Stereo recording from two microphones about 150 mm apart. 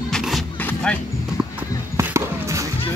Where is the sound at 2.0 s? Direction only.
20° right (ahead or behind).